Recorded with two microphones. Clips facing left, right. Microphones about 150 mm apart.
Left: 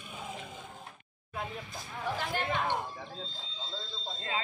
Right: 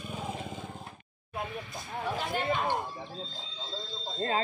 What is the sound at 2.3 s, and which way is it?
Speech, 20° right (ahead or behind).